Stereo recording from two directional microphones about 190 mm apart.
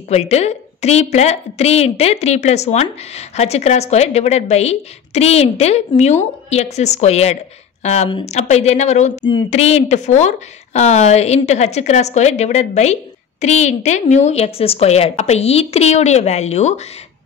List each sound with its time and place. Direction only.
0.1 s speech: 35° left (ahead or behind)